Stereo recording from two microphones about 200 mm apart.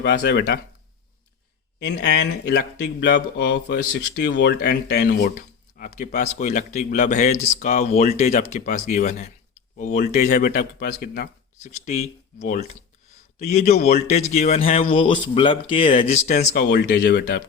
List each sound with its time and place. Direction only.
0.0 s speech: 60° left (ahead or behind)
1.8 s speech: 60° left (ahead or behind); by 10.3 s 35° left (ahead or behind)
10.3 s a man's voice: 50° left (ahead or behind)
11.6 s speech: 35° left (ahead or behind)
16.6 s speech: 60° left (ahead or behind)